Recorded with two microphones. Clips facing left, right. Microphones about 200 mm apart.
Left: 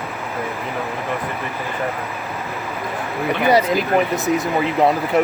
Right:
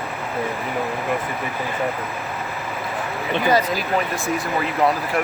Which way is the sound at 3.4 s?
20° left (ahead or behind).